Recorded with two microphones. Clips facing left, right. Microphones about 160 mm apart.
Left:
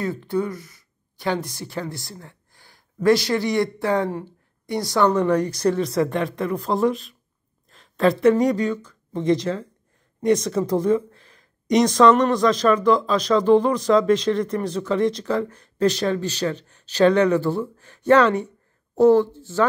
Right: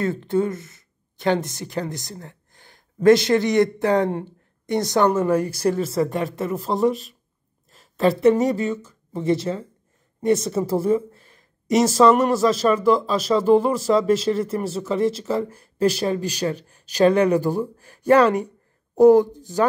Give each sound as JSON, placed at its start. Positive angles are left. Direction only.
{"t": 0.2, "sound": "a woman's voice", "side_deg": -25}
{"t": 3.3, "sound": "speech", "side_deg": -45}
{"t": 4.6, "sound": "a woman's voice", "side_deg": -20}
{"t": 5.2, "sound": "speech", "side_deg": -5}
{"t": 10.6, "sound": "speech", "side_deg": -5}